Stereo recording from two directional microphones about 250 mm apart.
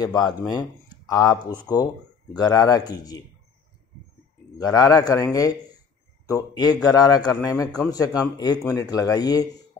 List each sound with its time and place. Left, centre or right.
0.0 s a man's voice: centre
4.6 s a man's voice: centre